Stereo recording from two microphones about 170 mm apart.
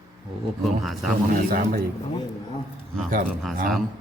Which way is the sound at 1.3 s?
55° right (ahead or behind).